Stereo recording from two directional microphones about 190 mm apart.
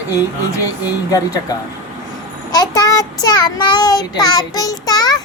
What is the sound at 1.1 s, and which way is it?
Child singing, 20° left (ahead or behind).